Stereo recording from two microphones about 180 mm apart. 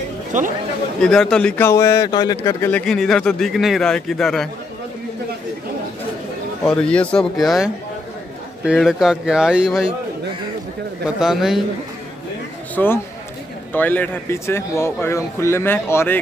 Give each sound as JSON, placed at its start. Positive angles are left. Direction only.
{"t": 0.3, "sound": "speech", "side_deg": -45}
{"t": 1.0, "sound": "speech", "side_deg": 5}
{"t": 2.8, "sound": "a man's voice", "side_deg": 5}
{"t": 6.6, "sound": "a man's voice", "side_deg": 5}
{"t": 11.1, "sound": "a man's voice", "side_deg": 0}
{"t": 12.7, "sound": "a man's voice", "side_deg": 10}